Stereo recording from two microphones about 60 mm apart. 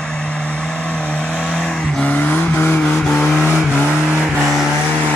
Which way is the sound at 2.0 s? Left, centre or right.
Left.